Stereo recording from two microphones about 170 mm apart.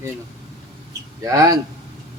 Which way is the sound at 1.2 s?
20° right (ahead or behind).